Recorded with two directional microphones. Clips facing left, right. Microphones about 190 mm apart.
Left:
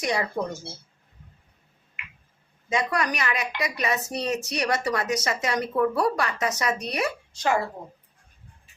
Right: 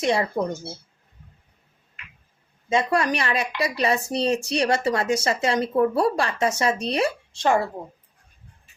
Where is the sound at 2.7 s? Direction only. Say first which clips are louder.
Right 4 dB; 25° right (ahead or behind).